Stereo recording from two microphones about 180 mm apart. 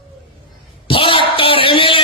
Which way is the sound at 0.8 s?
30° left (ahead or behind).